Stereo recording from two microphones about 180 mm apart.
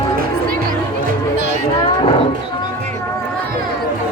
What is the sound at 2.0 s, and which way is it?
Music, 30° left (ahead or behind).